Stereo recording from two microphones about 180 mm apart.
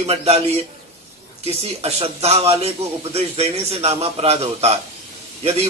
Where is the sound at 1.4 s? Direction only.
35° right (ahead or behind).